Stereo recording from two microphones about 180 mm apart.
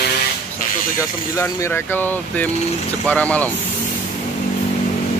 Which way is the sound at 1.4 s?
15° left (ahead or behind).